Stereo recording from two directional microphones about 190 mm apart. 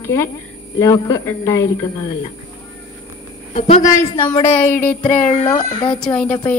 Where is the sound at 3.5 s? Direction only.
35° left (ahead or behind).